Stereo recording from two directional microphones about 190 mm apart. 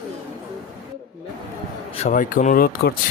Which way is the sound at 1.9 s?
35° left (ahead or behind).